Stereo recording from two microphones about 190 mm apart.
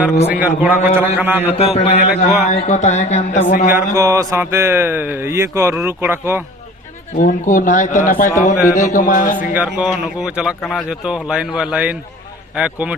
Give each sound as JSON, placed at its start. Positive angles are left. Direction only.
{"t": 0.3, "sound": "speech", "side_deg": -10}
{"t": 1.5, "sound": "speech", "side_deg": 30}
{"t": 3.9, "sound": "speech", "side_deg": -15}
{"t": 7.2, "sound": "speech", "side_deg": 40}
{"t": 9.6, "sound": "a man's voice", "side_deg": -5}